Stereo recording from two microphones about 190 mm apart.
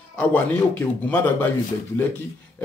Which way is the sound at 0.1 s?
10° left (ahead or behind).